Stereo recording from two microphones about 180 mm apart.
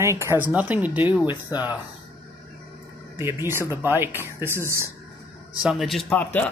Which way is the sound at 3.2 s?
15° right (ahead or behind).